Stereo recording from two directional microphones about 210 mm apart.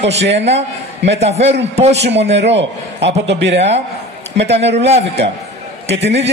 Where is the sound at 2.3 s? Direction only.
55° right (ahead or behind).